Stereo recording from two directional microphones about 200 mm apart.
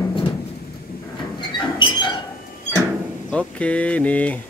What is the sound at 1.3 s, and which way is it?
Squeak, 25° left (ahead or behind).